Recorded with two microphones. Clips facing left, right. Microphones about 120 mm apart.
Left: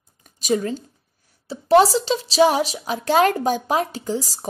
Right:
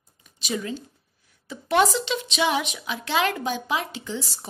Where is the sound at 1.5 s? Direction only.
35° left (ahead or behind).